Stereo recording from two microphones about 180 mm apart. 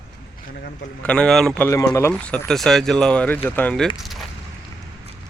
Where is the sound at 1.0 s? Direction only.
5° left (ahead or behind).